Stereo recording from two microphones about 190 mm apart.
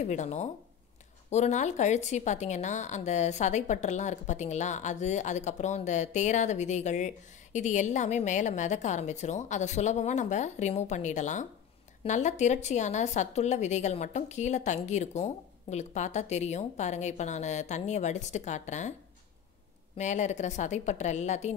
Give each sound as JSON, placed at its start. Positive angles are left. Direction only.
{"t": 0.0, "sound": "a woman's voice", "side_deg": 40}
{"t": 20.0, "sound": "a woman's voice", "side_deg": 40}